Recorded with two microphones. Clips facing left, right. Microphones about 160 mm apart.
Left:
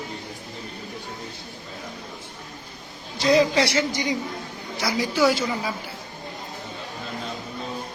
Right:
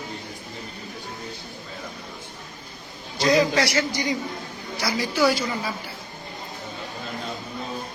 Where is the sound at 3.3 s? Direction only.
25° left (ahead or behind).